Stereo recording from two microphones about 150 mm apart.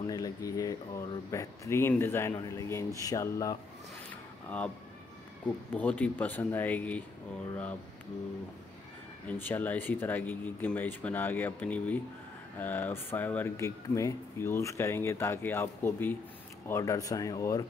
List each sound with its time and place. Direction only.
0.0 s speech: 25° left (ahead or behind)
4.1 s a sound: 10° left (ahead or behind)
5.8 s speech: 10° left (ahead or behind)
9.3 s speech: 10° left (ahead or behind)